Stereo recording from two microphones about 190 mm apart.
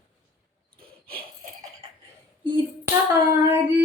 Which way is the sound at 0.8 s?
50° right (ahead or behind).